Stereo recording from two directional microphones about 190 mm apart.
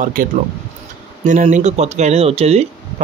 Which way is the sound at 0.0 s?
45° right (ahead or behind).